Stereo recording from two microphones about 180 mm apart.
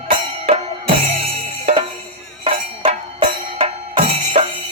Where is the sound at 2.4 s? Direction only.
30° right (ahead or behind).